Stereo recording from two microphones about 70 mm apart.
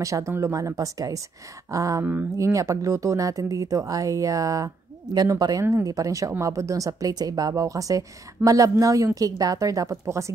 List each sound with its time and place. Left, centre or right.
0.0 s speech: right
5.6 s speech: right